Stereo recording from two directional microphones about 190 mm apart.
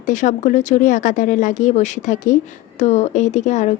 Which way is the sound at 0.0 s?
40° left (ahead or behind).